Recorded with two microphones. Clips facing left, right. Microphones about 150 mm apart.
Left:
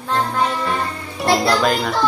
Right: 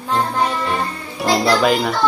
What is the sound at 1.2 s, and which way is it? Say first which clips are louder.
Music: right 1 dB; centre (ahead or behind).